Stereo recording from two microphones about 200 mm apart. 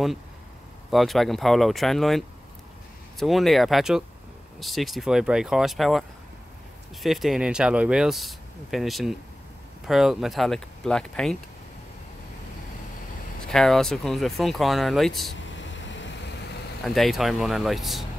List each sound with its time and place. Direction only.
0.8 s speech: centre (ahead or behind)
13.5 s speech: centre (ahead or behind)
15.3 s vehicle: 70° left (ahead or behind)
16.8 s speech: centre (ahead or behind)